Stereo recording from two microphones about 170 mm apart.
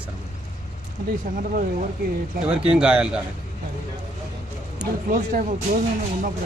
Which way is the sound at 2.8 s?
5° right (ahead or behind).